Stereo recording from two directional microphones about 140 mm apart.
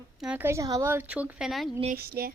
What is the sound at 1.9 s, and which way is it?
Speech, 90° right.